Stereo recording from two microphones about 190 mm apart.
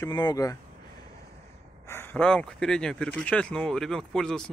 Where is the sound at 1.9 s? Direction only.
10° left (ahead or behind).